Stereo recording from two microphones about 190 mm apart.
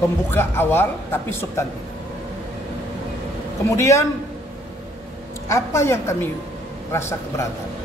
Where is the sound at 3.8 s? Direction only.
15° left (ahead or behind).